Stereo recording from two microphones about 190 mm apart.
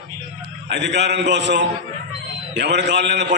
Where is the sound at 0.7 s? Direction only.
65° right (ahead or behind).